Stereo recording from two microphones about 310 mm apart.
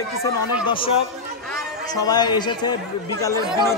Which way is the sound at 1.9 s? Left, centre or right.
Centre.